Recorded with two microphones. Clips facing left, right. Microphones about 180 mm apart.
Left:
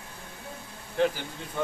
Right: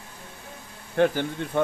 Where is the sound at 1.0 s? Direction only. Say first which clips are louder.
Right 5 dB; 65° right (ahead or behind).